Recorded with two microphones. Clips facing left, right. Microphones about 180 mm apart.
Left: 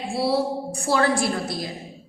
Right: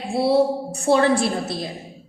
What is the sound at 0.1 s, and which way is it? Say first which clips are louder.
A woman's voice: right 5 dB; 25° right (ahead or behind).